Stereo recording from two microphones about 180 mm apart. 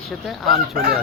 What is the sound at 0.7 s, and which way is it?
Speech, 55° right (ahead or behind).